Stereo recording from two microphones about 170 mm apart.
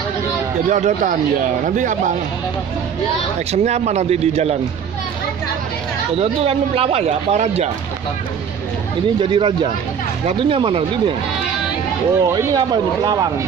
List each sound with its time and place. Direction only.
0.7 s speech: 45° right (ahead or behind)
3.5 s speech: 40° right (ahead or behind)
6.1 s speech: 35° right (ahead or behind)
9.2 s speech: 30° right (ahead or behind)
12.2 s speech: 25° right (ahead or behind)